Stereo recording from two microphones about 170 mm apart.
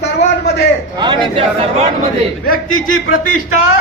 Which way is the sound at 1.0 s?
25° right (ahead or behind).